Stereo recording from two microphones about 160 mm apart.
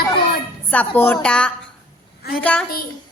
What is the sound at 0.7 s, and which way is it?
A woman's voice, 10° left (ahead or behind).